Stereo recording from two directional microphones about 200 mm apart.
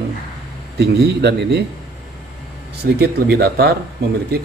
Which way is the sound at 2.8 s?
45° right (ahead or behind).